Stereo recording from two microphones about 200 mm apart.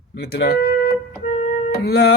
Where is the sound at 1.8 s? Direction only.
55° left (ahead or behind).